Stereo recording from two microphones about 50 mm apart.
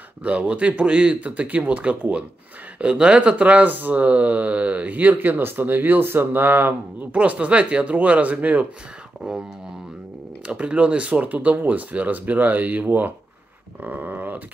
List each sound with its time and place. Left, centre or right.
0.2 s speech: right
7.1 s speech: right
10.4 s speech: right